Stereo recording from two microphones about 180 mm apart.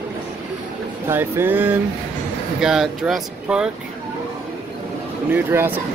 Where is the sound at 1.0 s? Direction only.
15° right (ahead or behind).